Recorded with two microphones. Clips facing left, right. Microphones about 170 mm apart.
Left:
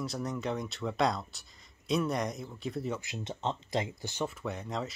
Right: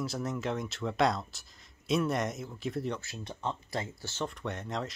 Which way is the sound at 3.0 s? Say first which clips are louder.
Left 2 dB; 20° left (ahead or behind).